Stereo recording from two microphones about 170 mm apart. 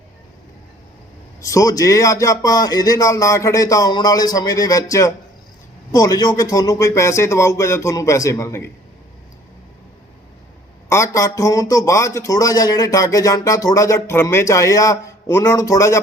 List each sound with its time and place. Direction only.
1.4 s speech: 20° left (ahead or behind)
10.8 s speech: 15° left (ahead or behind)